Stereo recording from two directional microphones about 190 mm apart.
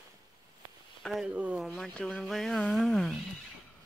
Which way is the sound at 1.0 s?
Centre (ahead or behind).